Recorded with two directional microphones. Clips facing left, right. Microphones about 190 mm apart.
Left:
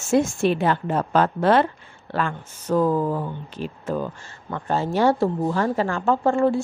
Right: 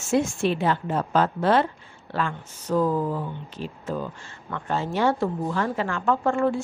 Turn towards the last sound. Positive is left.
turn(degrees=30)  # may be behind; listen again after turning